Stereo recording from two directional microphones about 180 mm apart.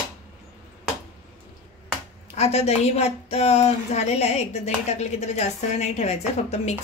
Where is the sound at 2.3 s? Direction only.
35° left (ahead or behind).